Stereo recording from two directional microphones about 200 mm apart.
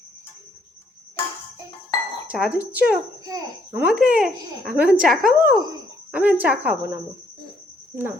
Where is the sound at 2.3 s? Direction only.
5° right (ahead or behind).